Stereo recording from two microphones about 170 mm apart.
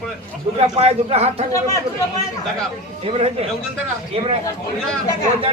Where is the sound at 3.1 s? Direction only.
35° right (ahead or behind).